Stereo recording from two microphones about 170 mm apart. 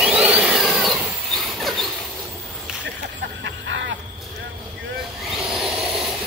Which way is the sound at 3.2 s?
85° right.